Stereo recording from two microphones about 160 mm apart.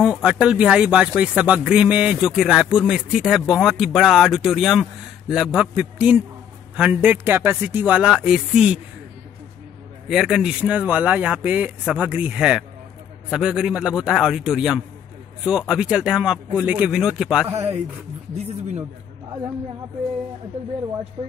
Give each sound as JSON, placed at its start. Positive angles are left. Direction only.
{"t": 0.0, "sound": "speech", "side_deg": -5}
{"t": 10.0, "sound": "speech", "side_deg": 0}
{"t": 21.2, "sound": "speech", "side_deg": -30}